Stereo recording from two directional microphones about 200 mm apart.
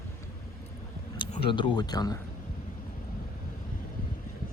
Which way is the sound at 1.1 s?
25° left (ahead or behind).